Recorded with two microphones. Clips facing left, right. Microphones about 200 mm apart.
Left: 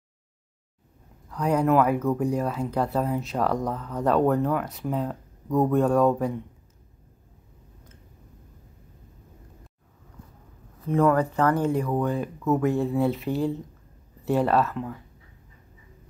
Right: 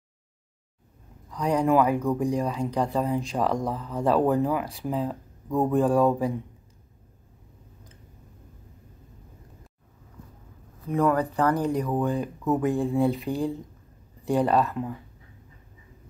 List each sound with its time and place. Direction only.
1.3 s speech: 5° left (ahead or behind)
3.6 s speech: 10° right (ahead or behind)
11.0 s speech: 15° right (ahead or behind)
11.5 s speech: 40° right (ahead or behind)
12.1 s speech: centre (ahead or behind)